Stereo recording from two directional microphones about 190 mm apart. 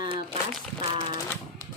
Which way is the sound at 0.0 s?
25° right (ahead or behind).